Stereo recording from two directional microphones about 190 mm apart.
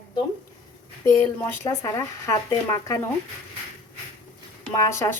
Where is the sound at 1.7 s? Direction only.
15° left (ahead or behind).